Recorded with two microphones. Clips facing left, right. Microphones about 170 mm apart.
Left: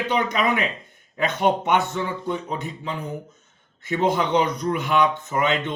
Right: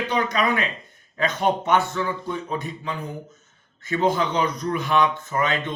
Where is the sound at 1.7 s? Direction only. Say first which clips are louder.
Right 1 dB; 20° left (ahead or behind).